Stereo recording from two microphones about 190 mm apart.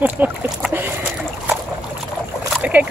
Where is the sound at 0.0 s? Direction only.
10° right (ahead or behind).